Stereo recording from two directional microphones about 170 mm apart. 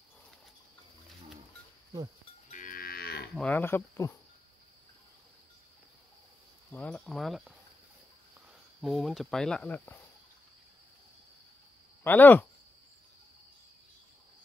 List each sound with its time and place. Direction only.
2.5 s livestock: 55° left (ahead or behind)
3.3 s speech: 10° left (ahead or behind)
6.7 s speech: 5° left (ahead or behind)
8.8 s speech: centre (ahead or behind)
12.0 s speech: 10° left (ahead or behind)